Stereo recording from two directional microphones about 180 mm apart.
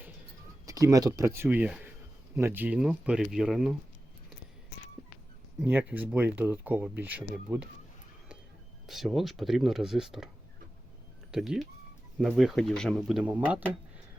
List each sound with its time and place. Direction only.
0.6 s a sound: 20° right (ahead or behind)
1.2 s speech: 15° right (ahead or behind)
5.5 s speech: 10° right (ahead or behind)
8.9 s speech: centre (ahead or behind)
11.3 s speech: centre (ahead or behind)